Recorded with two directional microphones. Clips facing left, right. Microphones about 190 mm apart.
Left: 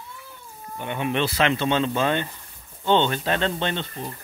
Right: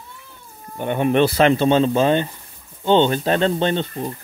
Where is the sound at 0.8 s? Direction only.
45° right (ahead or behind).